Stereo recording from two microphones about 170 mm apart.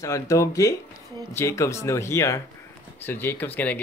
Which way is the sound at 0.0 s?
20° left (ahead or behind).